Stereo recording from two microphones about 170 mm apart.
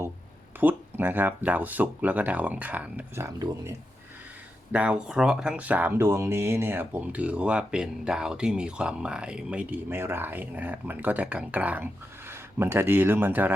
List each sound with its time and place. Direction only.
0.6 s speech: 10° right (ahead or behind)
4.7 s speech: 5° right (ahead or behind)